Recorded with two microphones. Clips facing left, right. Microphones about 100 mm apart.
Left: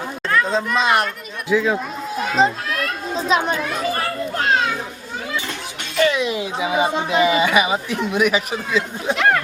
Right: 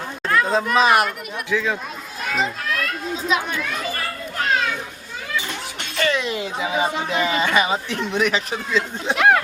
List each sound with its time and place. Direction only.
0.3 s speech: 5° right (ahead or behind)
1.5 s speech: 15° left (ahead or behind)
2.3 s a child's voice: 35° left (ahead or behind)
6.0 s speech: 15° left (ahead or behind)
9.1 s speech: 5° right (ahead or behind)